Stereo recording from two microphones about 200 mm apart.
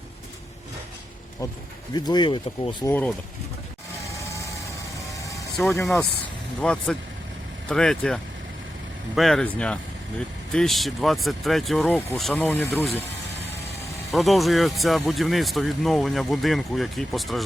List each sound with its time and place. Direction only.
1.9 s speech: 20° left (ahead or behind)
2.9 s speech: 5° left (ahead or behind)
5.7 s speech: 15° left (ahead or behind)
14.1 s speech: centre (ahead or behind)